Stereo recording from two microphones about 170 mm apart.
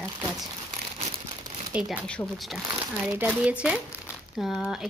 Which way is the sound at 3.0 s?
10° right (ahead or behind).